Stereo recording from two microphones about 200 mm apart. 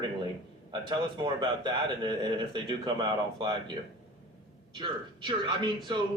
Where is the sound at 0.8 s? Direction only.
20° right (ahead or behind).